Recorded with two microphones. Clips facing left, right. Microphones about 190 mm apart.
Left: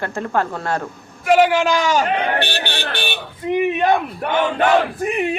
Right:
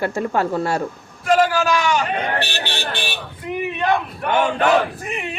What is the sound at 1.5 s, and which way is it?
Speech, 25° left (ahead or behind).